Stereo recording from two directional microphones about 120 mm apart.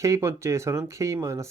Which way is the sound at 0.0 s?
25° right (ahead or behind).